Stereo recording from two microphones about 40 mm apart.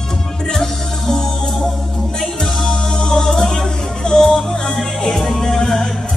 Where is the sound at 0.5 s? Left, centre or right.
Centre.